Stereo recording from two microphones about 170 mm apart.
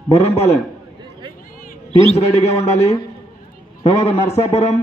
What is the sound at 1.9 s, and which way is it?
A man's voice, 40° left (ahead or behind).